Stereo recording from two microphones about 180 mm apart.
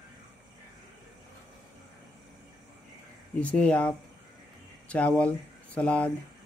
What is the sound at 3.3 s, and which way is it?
Speech, 5° left (ahead or behind).